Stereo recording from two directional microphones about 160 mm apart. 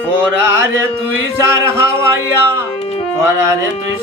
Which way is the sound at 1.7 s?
15° right (ahead or behind).